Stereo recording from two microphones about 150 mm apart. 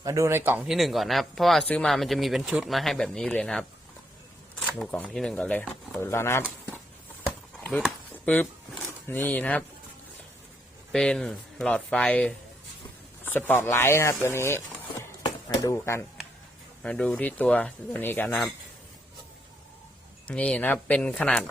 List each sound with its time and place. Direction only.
0.0 s speech: 20° right (ahead or behind)
0.6 s speech: centre (ahead or behind); by 6.7 s 15° left (ahead or behind)
8.2 s speech: 10° left (ahead or behind)
10.9 s speech: 5° left (ahead or behind); by 16.0 s 20° left (ahead or behind)
16.8 s speech: 10° left (ahead or behind)
20.2 s speech: 10° left (ahead or behind)